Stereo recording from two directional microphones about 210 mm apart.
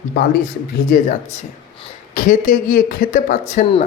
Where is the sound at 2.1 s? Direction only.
40° left (ahead or behind).